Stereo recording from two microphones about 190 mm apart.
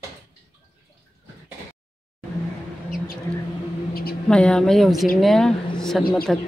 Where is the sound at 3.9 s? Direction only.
50° left (ahead or behind).